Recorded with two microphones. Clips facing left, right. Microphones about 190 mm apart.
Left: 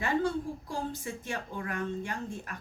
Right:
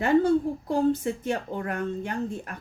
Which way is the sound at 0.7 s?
60° right (ahead or behind).